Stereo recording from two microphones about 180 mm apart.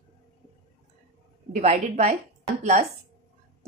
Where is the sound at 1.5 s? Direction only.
40° right (ahead or behind).